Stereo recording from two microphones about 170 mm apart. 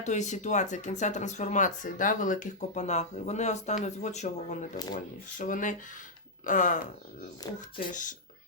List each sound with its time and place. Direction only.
0.0 s speech: 45° left (ahead or behind)
7.4 s speech: 25° left (ahead or behind)